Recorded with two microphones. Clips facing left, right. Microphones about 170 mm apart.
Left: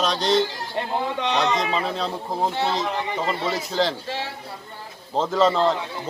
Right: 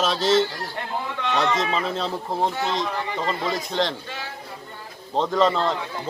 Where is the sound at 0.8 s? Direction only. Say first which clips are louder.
Left 6 dB; 20° left (ahead or behind).